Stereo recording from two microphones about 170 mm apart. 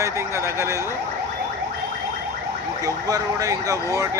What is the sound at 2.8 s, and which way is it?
Speech, 20° right (ahead or behind).